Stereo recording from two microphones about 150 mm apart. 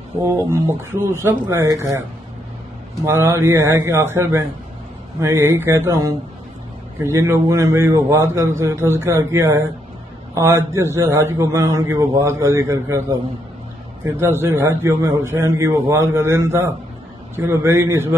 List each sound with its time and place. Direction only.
0.2 s a man's voice: 15° right (ahead or behind)